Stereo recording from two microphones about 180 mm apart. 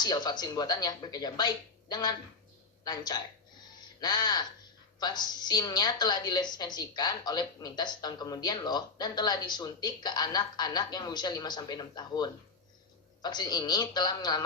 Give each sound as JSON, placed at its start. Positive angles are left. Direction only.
{"t": 0.0, "sound": "a woman's voice", "side_deg": 20}
{"t": 3.8, "sound": "a sound", "side_deg": 25}
{"t": 4.9, "sound": "a woman's voice", "side_deg": 25}